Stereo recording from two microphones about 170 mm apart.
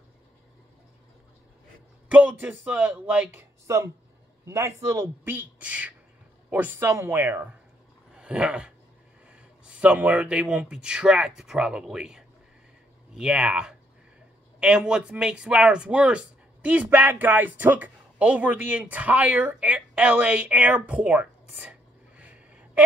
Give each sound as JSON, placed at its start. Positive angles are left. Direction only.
{"t": 2.0, "sound": "speech", "side_deg": -10}
{"t": 8.1, "sound": "a sound", "side_deg": -5}
{"t": 9.3, "sound": "a man's voice", "side_deg": -5}